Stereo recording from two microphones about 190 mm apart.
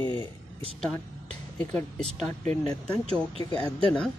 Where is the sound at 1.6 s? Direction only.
5° left (ahead or behind).